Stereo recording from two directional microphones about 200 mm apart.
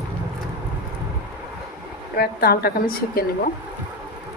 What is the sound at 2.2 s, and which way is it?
A woman's voice, 50° left (ahead or behind).